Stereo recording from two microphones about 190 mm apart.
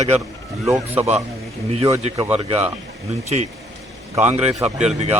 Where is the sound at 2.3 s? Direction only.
30° right (ahead or behind).